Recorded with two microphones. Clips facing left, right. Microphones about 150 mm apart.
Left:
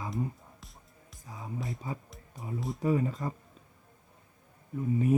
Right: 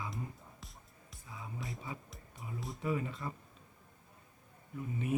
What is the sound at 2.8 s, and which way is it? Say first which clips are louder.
Speech: left 8 dB; 40° left (ahead or behind).